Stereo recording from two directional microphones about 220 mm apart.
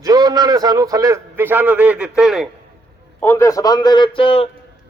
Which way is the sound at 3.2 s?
10° left (ahead or behind).